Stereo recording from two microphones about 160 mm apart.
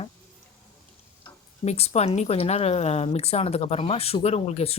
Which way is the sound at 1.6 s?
40° left (ahead or behind).